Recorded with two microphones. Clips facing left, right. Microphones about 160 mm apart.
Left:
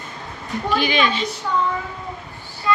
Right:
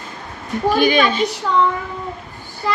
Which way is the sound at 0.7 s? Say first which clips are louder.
Right 4 dB; 45° right (ahead or behind).